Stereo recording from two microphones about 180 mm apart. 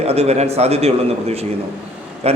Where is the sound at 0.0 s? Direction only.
35° right (ahead or behind).